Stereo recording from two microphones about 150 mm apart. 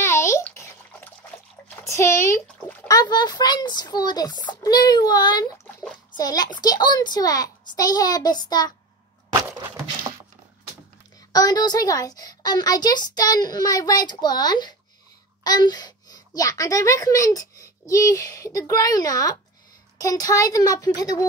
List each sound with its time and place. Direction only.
0.0 s a sound: 20° left (ahead or behind)
2.9 s a woman's voice: 30° left (ahead or behind)
11.3 s a woman's voice: 25° left (ahead or behind)